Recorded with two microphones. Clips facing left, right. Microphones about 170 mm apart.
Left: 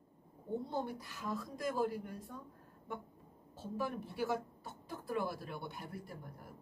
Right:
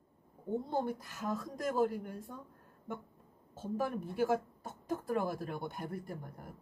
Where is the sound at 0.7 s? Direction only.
50° right (ahead or behind).